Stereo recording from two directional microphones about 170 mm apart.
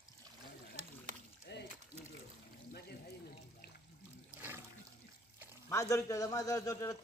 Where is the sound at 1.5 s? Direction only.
80° left.